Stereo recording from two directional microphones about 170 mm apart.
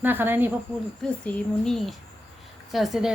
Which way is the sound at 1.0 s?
5° left (ahead or behind).